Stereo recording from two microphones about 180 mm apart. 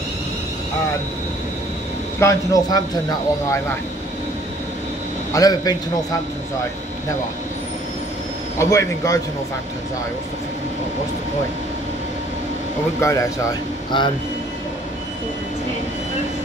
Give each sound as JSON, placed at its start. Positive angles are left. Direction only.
{"t": 2.1, "sound": "speech", "side_deg": 15}
{"t": 5.3, "sound": "a man's voice", "side_deg": 20}
{"t": 8.5, "sound": "a man's voice", "side_deg": 15}
{"t": 13.0, "sound": "speech", "side_deg": 15}